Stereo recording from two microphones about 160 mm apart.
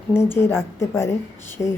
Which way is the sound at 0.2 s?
15° left (ahead or behind).